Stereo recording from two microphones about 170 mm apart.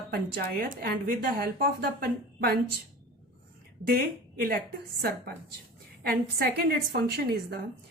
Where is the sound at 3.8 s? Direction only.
65° right (ahead or behind).